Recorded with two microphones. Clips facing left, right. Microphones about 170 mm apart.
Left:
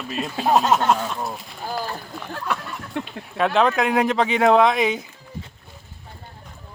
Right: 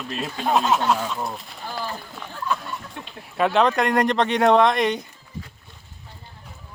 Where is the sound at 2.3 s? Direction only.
75° left (ahead or behind).